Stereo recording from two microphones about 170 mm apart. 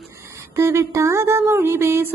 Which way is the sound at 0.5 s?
15° right (ahead or behind).